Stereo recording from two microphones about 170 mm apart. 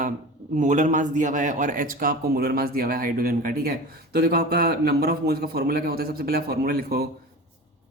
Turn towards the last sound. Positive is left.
turn(degrees=-60)  # may be behind; listen again after turning